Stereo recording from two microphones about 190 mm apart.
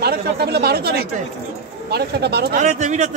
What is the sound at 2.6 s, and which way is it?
Speech, 40° right (ahead or behind).